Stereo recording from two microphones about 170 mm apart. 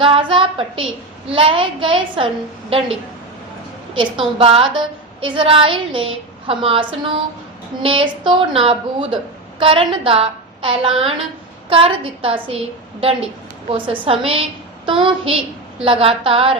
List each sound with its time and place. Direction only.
0.0 s a woman's voice: 30° right (ahead or behind)